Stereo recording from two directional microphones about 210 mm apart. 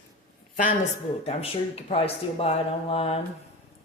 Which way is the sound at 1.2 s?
30° left (ahead or behind).